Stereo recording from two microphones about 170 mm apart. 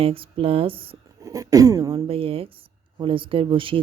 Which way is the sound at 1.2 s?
20° right (ahead or behind).